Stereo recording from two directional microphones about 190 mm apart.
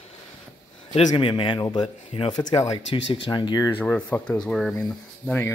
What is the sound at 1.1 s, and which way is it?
Speech, 25° left (ahead or behind).